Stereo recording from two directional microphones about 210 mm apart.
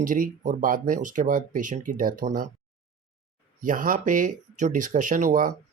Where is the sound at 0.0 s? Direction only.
40° right (ahead or behind).